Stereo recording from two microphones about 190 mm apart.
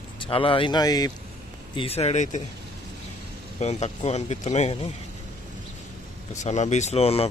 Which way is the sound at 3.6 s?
35° left (ahead or behind).